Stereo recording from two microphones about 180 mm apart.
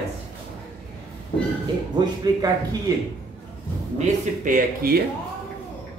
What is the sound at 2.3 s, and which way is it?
Speech, 20° right (ahead or behind).